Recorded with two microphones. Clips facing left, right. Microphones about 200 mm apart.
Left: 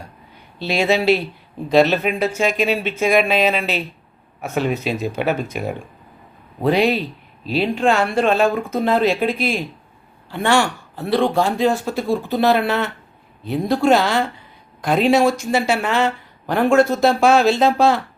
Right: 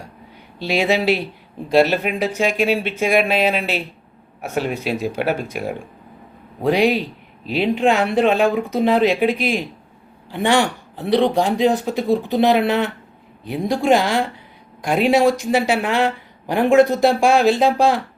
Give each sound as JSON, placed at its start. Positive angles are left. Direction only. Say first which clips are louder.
{"t": 0.6, "sound": "speech", "louder": "even", "side_deg": -15}